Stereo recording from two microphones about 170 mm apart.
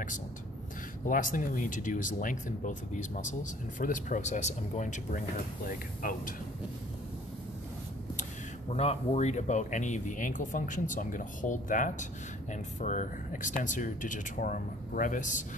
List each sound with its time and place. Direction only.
1.0 s speech: 50° left (ahead or behind)
8.7 s speech: 40° left (ahead or behind)